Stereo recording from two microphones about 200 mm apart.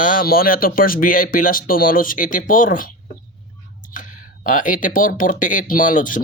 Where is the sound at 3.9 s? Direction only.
40° left (ahead or behind).